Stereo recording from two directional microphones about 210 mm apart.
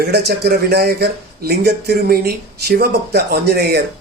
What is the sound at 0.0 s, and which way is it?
Speech, 50° right (ahead or behind).